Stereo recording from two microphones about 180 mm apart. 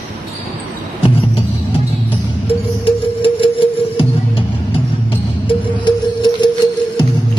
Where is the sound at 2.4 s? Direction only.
30° left (ahead or behind).